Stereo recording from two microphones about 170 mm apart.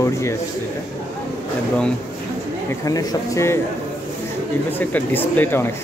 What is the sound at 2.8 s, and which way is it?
Speech, 20° left (ahead or behind).